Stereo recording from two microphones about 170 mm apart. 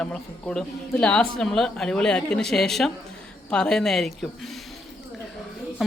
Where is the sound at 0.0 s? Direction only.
5° left (ahead or behind).